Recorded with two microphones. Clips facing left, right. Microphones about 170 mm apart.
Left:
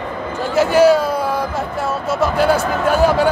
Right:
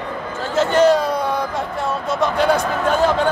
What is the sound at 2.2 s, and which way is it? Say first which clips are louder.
Speech: left 2 dB; 5° left (ahead or behind).